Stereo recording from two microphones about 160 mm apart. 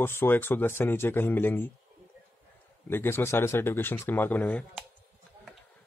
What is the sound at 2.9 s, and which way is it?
Speech, 15° left (ahead or behind).